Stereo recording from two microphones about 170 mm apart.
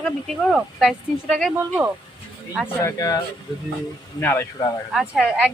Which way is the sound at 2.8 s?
20° left (ahead or behind).